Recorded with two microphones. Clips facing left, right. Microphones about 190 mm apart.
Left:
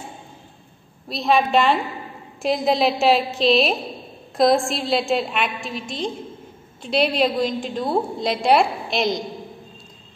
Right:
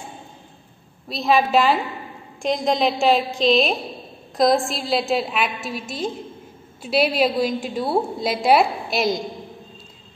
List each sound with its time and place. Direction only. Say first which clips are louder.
1.0 s a woman's voice: even; centre (ahead or behind)